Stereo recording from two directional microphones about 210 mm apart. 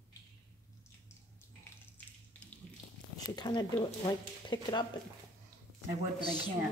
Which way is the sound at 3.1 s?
20° left (ahead or behind).